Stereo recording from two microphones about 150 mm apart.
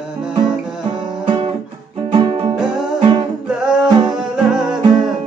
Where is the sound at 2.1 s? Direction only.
40° right (ahead or behind).